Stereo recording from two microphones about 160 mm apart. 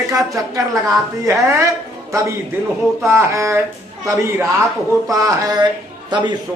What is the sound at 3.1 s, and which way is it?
Speech, 20° right (ahead or behind).